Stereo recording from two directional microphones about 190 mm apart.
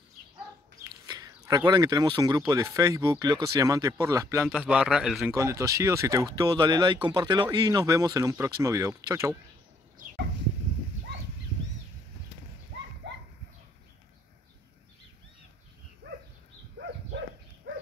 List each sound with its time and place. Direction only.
1.0 s speech: 20° right (ahead or behind)
4.5 s a man's voice: 5° right (ahead or behind)
5.3 s speech: 15° right (ahead or behind)
13.0 s a sound: 65° right (ahead or behind)
16.0 s dog: 60° right (ahead or behind)
16.7 s a sound: 65° right (ahead or behind)